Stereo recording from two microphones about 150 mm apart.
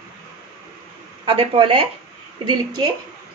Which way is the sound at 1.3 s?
40° right (ahead or behind).